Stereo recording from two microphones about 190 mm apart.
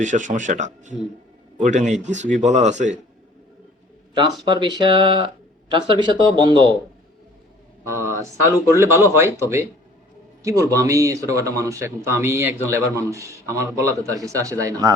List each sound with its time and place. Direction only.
0.0 s speech: 40° right (ahead or behind)
4.1 s speech: 25° right (ahead or behind)
8.7 s speech: 15° right (ahead or behind)